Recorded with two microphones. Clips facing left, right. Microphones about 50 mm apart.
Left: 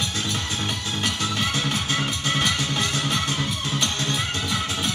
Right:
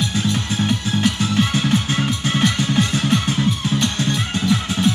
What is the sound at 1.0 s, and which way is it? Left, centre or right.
Music, centre.